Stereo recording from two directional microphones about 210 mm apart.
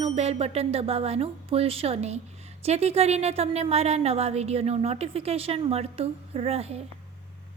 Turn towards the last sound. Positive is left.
turn(degrees=-30)  # may be behind; listen again after turning